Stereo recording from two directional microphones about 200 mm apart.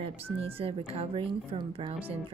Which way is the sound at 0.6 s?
30° right (ahead or behind).